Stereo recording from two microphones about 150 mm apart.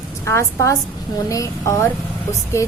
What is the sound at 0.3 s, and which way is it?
A woman's voice, 20° left (ahead or behind).